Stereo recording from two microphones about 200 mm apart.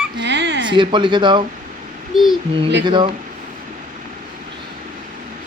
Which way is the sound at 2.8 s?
25° right (ahead or behind).